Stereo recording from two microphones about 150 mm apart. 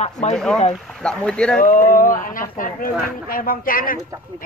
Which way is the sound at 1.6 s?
65° left (ahead or behind).